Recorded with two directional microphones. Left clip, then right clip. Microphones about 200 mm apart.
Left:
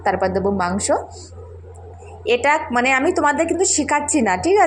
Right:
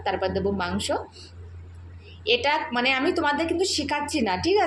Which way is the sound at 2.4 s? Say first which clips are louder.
Left 6 dB; 25° left (ahead or behind).